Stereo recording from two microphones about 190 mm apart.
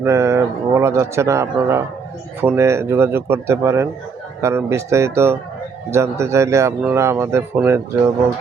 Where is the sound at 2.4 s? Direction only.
15° right (ahead or behind).